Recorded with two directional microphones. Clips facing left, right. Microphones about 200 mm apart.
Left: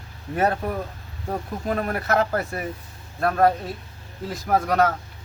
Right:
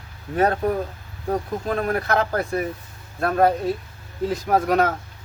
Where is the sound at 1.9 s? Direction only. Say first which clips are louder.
Even; centre (ahead or behind).